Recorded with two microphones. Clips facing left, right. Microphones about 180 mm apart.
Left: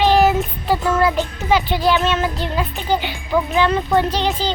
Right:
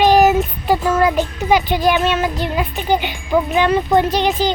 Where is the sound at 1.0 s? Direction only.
15° right (ahead or behind).